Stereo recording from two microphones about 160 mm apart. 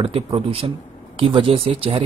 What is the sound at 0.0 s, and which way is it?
Speech, 35° right (ahead or behind).